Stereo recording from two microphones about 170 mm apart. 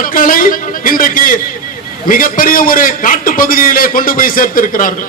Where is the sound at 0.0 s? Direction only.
55° left (ahead or behind).